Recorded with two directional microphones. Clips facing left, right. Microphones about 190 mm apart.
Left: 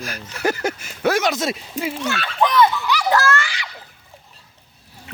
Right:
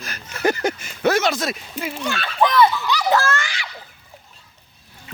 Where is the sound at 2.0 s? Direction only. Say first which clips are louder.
Right 2 dB; 10° right (ahead or behind).